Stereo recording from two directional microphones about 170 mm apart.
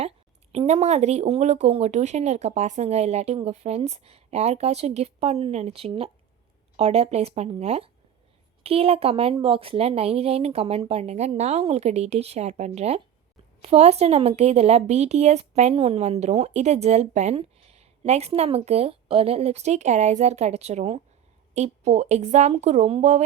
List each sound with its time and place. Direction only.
0.5 s a woman's voice: 40° right (ahead or behind)